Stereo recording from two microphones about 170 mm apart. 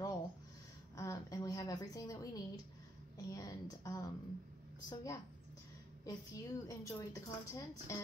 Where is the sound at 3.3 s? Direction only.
20° left (ahead or behind).